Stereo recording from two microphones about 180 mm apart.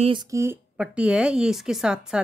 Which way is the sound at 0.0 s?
25° right (ahead or behind).